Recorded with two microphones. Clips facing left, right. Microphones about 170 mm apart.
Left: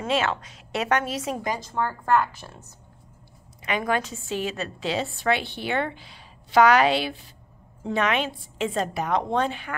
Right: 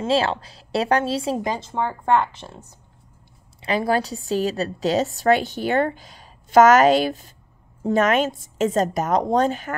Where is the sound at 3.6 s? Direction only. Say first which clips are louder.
Right 4 dB; 35° right (ahead or behind).